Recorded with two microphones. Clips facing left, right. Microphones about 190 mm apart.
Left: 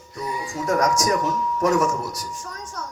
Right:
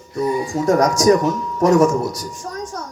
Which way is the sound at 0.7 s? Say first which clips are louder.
Right 7 dB; 35° right (ahead or behind).